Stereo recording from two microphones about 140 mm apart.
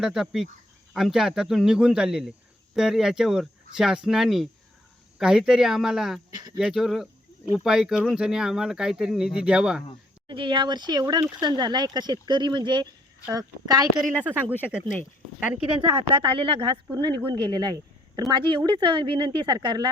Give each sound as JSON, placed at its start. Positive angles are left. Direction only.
{"t": 0.0, "sound": "speech", "side_deg": -5}
{"t": 6.3, "sound": "speech", "side_deg": -30}
{"t": 6.6, "sound": "speech", "side_deg": -5}
{"t": 10.2, "sound": "a woman's voice", "side_deg": -35}
{"t": 14.6, "sound": "speech", "side_deg": -10}
{"t": 15.9, "sound": "a woman's voice", "side_deg": -40}
{"t": 16.9, "sound": "a woman's voice", "side_deg": -30}